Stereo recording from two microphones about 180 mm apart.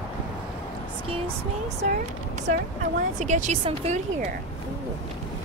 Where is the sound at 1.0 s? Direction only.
30° right (ahead or behind).